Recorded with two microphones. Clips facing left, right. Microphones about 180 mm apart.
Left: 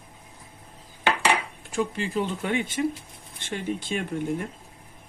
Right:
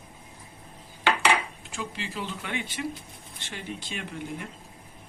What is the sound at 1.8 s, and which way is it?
Speech, 45° left (ahead or behind).